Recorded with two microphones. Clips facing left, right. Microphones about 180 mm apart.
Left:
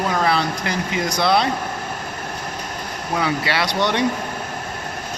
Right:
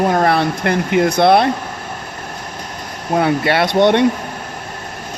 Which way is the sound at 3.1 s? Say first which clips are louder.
Right 7 dB; 55° right (ahead or behind).